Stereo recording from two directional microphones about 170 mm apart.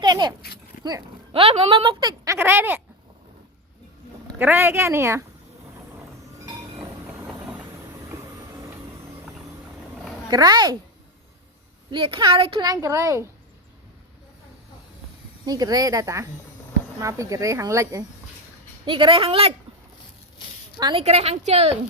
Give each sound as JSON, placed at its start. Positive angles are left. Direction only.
{"t": 0.0, "sound": "speech", "side_deg": -25}
{"t": 1.3, "sound": "speech", "side_deg": -35}
{"t": 4.4, "sound": "a woman's voice", "side_deg": -10}
{"t": 7.3, "sound": "vehicle", "side_deg": -10}
{"t": 10.2, "sound": "speech", "side_deg": -25}
{"t": 11.9, "sound": "speech", "side_deg": -30}
{"t": 15.4, "sound": "speech", "side_deg": -20}
{"t": 18.9, "sound": "a woman's voice", "side_deg": -30}
{"t": 20.7, "sound": "speech", "side_deg": -25}
{"t": 21.0, "sound": "a woman's voice", "side_deg": -40}